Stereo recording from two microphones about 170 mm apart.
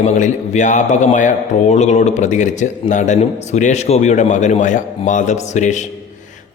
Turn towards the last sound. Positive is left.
turn(degrees=45)  # may be behind; listen again after turning